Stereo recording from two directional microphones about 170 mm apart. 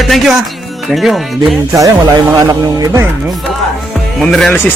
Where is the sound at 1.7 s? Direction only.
20° right (ahead or behind).